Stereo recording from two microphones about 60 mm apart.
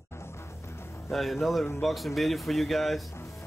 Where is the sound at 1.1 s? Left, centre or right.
Centre.